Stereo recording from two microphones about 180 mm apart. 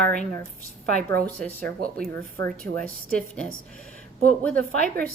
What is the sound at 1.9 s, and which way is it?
Speech, 55° right (ahead or behind).